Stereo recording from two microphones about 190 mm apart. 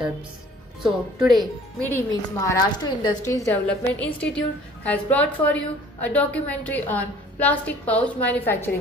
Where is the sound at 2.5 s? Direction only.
20° left (ahead or behind).